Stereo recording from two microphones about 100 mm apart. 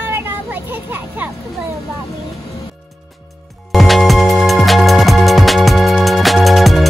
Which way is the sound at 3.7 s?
Centre (ahead or behind).